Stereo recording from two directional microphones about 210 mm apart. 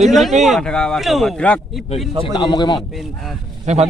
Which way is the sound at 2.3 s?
20° left (ahead or behind).